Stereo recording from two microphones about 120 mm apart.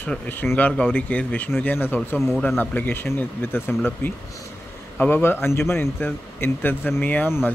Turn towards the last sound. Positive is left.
turn(degrees=20)  # may be behind; listen again after turning